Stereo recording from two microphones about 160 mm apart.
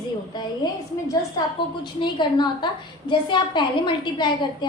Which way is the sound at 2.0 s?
30° left (ahead or behind).